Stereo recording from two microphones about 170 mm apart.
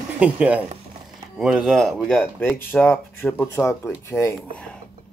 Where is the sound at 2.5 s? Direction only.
10° left (ahead or behind).